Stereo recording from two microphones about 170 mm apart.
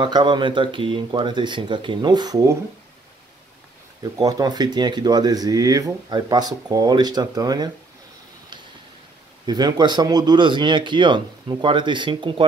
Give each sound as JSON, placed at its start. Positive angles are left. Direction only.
{"t": 0.0, "sound": "speech", "side_deg": -25}
{"t": 4.0, "sound": "speech", "side_deg": -20}
{"t": 9.5, "sound": "speech", "side_deg": -25}